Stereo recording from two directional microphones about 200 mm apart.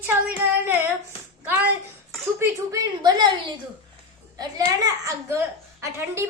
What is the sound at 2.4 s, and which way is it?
Speech, 20° right (ahead or behind).